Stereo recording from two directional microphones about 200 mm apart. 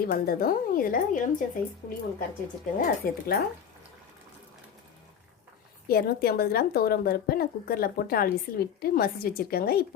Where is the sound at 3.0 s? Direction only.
45° left (ahead or behind).